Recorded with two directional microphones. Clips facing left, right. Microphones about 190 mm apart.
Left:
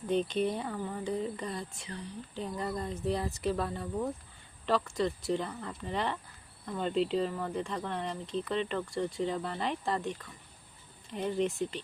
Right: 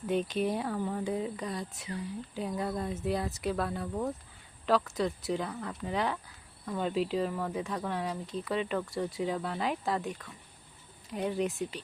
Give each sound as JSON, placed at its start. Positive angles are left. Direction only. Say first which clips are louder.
{"t": 0.2, "sound": "speech", "louder": "even", "side_deg": -5}